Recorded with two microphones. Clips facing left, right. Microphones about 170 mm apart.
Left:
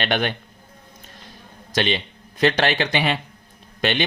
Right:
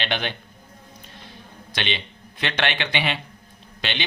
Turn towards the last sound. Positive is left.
turn(degrees=45)  # may be behind; listen again after turning